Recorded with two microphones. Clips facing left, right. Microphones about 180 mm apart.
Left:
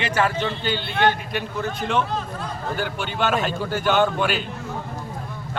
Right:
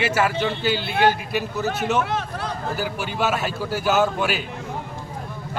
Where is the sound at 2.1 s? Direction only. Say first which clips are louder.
Right 2 dB; 75° right (ahead or behind).